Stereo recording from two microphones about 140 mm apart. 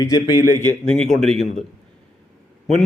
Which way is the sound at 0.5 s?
15° left (ahead or behind).